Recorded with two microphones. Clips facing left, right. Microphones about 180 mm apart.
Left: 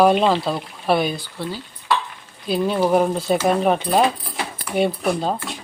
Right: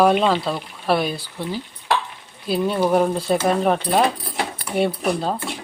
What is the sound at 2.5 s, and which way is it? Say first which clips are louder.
Speech: left 1 dB; 5° left (ahead or behind).